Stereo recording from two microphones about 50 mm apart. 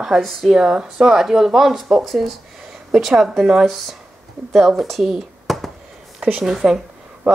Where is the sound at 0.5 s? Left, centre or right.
Centre.